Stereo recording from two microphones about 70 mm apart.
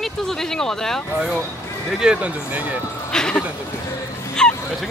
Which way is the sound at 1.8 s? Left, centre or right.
Centre.